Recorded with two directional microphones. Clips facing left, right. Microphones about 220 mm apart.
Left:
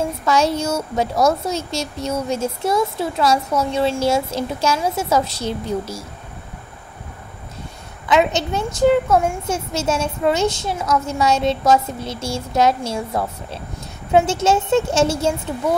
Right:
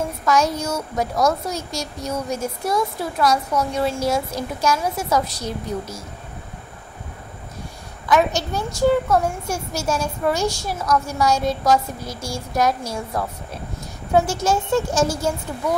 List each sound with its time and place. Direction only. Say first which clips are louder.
0.2 s a woman's voice: left 1 dB; 30° left (ahead or behind)
8.1 s a woman's voice: left 2 dB; 20° left (ahead or behind)